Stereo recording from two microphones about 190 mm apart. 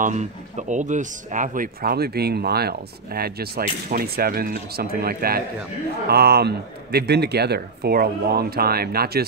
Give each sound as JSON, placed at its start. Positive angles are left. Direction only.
{"t": 0.0, "sound": "a man's voice", "side_deg": -40}